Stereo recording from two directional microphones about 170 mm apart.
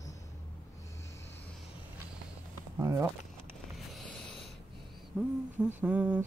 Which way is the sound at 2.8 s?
15° right (ahead or behind).